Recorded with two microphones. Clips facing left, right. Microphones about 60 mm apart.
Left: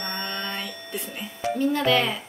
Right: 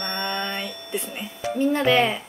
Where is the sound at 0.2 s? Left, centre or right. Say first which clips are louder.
Right 3 dB; right.